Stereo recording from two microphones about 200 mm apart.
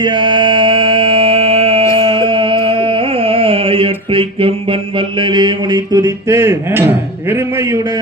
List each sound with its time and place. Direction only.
0.0 s music: 25° right (ahead or behind)
2.0 s mantra: 25° right (ahead or behind)
2.6 s a sound: 25° right (ahead or behind)